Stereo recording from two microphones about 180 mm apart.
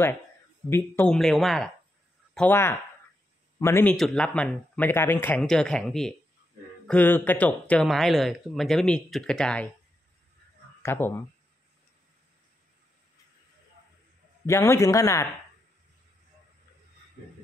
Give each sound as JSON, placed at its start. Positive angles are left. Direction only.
{"t": 0.7, "sound": "speech", "side_deg": 10}
{"t": 2.3, "sound": "a man's voice", "side_deg": 10}
{"t": 3.9, "sound": "speech", "side_deg": 0}
{"t": 10.8, "sound": "speech", "side_deg": 15}
{"t": 14.4, "sound": "speech", "side_deg": 15}